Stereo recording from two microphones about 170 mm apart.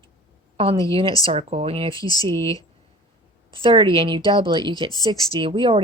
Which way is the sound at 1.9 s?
20° left (ahead or behind).